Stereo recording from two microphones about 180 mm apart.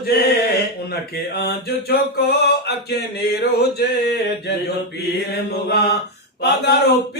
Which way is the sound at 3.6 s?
65° left (ahead or behind).